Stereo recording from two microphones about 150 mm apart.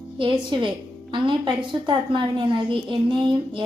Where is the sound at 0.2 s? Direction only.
35° right (ahead or behind).